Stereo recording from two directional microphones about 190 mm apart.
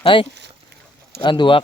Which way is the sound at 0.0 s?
25° left (ahead or behind).